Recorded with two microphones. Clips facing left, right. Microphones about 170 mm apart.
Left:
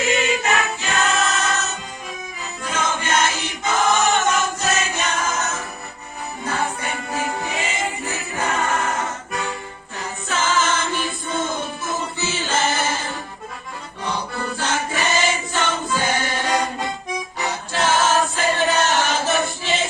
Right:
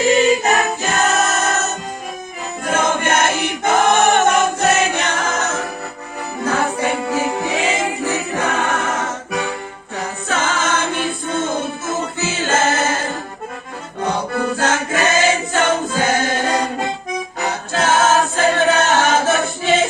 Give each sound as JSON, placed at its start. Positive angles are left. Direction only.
{"t": 0.0, "sound": "choir", "side_deg": -35}
{"t": 6.4, "sound": "music", "side_deg": -90}
{"t": 10.0, "sound": "chant", "side_deg": -65}
{"t": 12.5, "sound": "music", "side_deg": -50}
{"t": 14.0, "sound": "music", "side_deg": -60}
{"t": 14.9, "sound": "choir", "side_deg": -50}
{"t": 17.7, "sound": "choir", "side_deg": -50}
{"t": 18.8, "sound": "chant", "side_deg": -50}